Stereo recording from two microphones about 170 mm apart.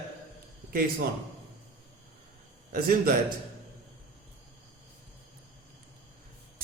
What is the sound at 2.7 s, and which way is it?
Speech, 60° right (ahead or behind).